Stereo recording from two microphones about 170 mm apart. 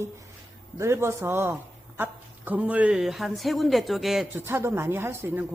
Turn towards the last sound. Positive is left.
turn(degrees=-10)  # may be behind; listen again after turning